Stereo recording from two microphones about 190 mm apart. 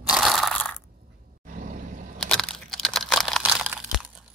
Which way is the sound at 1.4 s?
45° right (ahead or behind).